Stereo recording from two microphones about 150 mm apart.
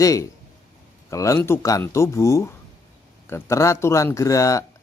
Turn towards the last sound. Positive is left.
turn(degrees=20)  # may be behind; listen again after turning